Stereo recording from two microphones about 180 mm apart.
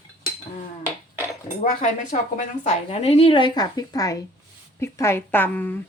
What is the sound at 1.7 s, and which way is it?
A woman's voice, 45° left (ahead or behind).